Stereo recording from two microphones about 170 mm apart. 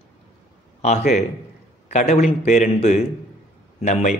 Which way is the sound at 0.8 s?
40° left (ahead or behind).